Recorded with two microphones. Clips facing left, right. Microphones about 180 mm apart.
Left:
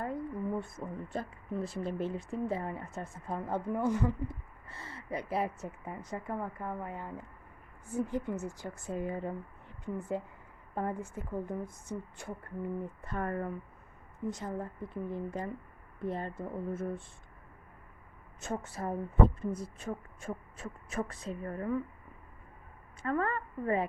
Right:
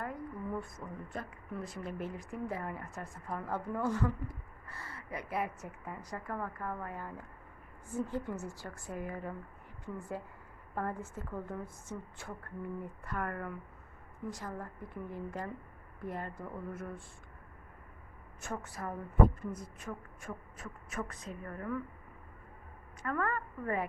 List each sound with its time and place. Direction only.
0.6 s a woman's voice: 30° left (ahead or behind)
18.3 s speech: 25° left (ahead or behind)
23.0 s speech: 25° left (ahead or behind)